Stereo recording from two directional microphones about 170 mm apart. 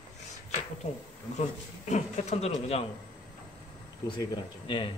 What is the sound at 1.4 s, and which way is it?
Speech, 45° left (ahead or behind).